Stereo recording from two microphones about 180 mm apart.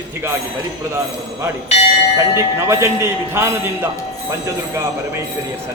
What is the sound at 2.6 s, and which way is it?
Speech, 15° right (ahead or behind).